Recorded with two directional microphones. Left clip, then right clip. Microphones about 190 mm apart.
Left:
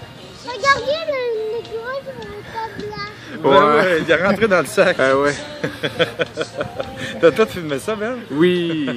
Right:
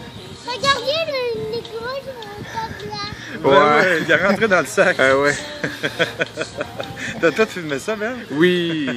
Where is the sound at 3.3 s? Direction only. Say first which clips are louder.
Left 1 dB; 5° left (ahead or behind).